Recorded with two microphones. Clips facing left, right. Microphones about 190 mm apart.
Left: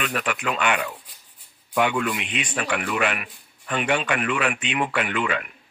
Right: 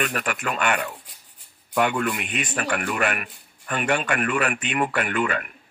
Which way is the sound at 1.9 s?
45° right (ahead or behind).